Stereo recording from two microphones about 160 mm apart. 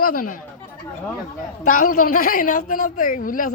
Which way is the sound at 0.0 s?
60° left (ahead or behind).